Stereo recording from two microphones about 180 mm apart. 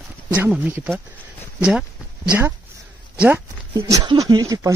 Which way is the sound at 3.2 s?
10° right (ahead or behind).